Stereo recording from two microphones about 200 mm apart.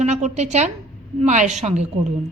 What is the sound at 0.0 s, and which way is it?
A woman's voice, 35° right (ahead or behind).